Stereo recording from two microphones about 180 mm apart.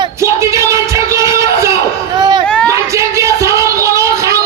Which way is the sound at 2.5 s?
5° left (ahead or behind).